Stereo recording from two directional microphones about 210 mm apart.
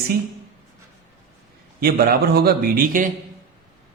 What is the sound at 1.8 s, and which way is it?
A man's voice, 50° right (ahead or behind).